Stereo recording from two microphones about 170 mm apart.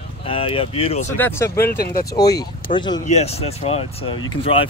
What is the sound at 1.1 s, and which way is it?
Speech, 15° left (ahead or behind).